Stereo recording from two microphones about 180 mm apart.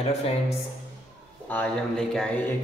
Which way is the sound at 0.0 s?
35° left (ahead or behind).